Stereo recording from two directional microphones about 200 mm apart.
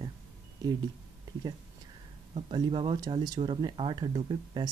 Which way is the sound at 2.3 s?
25° right (ahead or behind).